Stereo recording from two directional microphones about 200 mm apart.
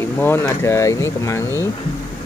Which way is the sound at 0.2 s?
10° left (ahead or behind).